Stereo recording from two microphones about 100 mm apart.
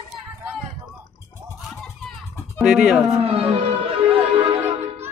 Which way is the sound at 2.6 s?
5° right (ahead or behind).